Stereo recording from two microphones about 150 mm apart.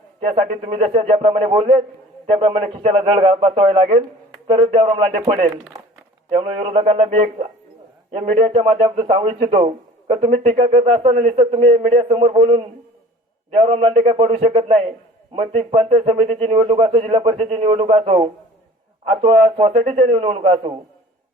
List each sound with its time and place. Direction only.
0.3 s a man's voice: 40° right (ahead or behind)